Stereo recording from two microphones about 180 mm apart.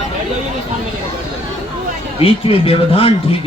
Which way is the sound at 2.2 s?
30° left (ahead or behind).